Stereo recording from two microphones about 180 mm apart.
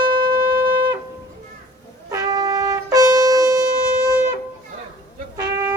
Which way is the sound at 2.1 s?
20° right (ahead or behind).